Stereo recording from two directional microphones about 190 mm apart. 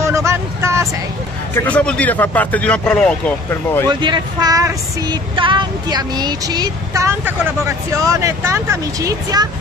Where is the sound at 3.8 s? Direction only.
20° right (ahead or behind).